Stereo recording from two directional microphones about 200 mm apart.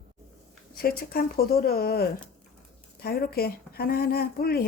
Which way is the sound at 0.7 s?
50° left (ahead or behind).